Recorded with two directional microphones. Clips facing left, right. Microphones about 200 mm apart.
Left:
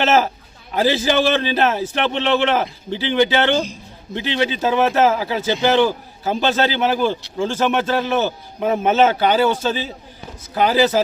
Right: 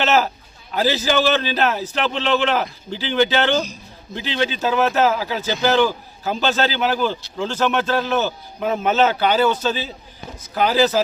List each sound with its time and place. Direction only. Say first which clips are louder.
0.7 s a man's voice: left 2 dB; 20° left (ahead or behind)